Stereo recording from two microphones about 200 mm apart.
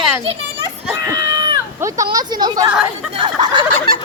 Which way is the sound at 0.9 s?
15° right (ahead or behind).